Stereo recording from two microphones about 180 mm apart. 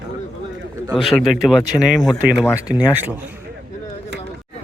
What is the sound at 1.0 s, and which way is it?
Speech, centre (ahead or behind).